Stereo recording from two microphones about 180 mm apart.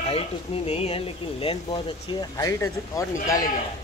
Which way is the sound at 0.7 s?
35° left (ahead or behind).